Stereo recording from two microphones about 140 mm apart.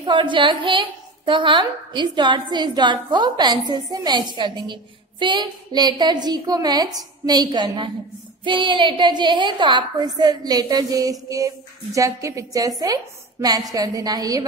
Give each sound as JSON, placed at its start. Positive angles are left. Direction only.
{"t": 0.0, "sound": "a woman's voice", "side_deg": -35}